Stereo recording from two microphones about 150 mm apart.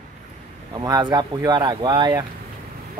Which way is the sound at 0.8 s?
25° right (ahead or behind).